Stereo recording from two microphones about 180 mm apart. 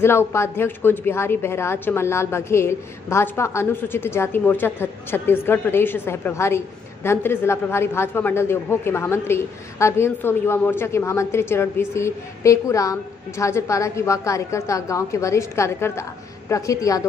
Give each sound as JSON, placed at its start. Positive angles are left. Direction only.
{"t": 0.0, "sound": "a woman's voice", "side_deg": 15}